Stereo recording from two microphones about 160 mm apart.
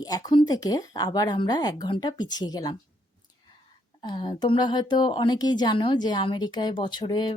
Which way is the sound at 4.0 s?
30° left (ahead or behind).